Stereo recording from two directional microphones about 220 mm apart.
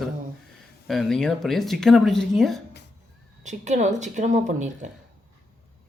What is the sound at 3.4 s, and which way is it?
Speech, 35° right (ahead or behind).